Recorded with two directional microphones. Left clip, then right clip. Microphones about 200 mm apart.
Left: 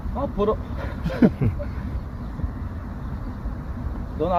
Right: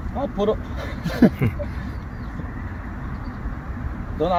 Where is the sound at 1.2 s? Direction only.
5° right (ahead or behind).